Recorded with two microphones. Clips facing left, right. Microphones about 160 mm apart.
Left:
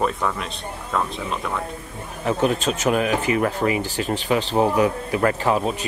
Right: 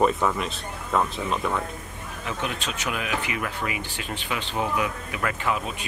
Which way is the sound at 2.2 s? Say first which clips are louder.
Left 10 dB; 40° left (ahead or behind).